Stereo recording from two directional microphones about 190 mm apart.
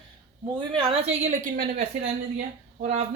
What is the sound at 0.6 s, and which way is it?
Speech, 30° right (ahead or behind).